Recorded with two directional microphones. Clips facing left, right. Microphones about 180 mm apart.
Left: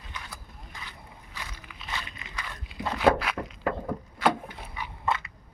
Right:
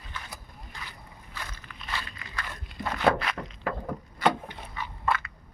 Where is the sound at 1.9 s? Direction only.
20° left (ahead or behind).